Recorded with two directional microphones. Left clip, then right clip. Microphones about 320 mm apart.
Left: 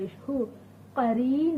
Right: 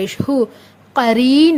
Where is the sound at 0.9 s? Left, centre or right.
Right.